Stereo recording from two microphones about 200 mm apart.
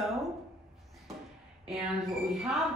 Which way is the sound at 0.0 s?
Centre (ahead or behind).